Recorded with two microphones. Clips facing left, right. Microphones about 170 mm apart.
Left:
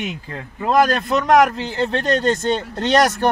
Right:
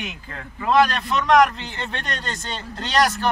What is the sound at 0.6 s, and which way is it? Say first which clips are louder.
Speech: left 2 dB; 45° left (ahead or behind).